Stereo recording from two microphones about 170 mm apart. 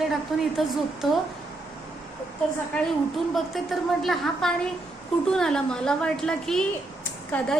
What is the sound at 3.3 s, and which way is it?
A woman's voice, centre (ahead or behind).